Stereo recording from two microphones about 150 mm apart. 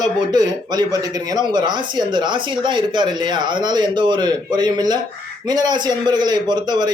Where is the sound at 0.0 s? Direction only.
30° right (ahead or behind).